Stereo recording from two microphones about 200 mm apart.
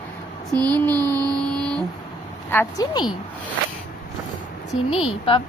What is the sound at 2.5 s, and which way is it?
Speech, 15° left (ahead or behind).